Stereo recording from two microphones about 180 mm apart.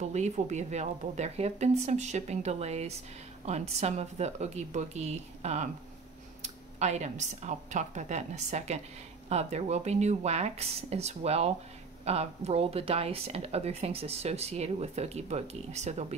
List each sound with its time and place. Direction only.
0.0 s speech: 40° right (ahead or behind)
6.8 s speech: 40° right (ahead or behind)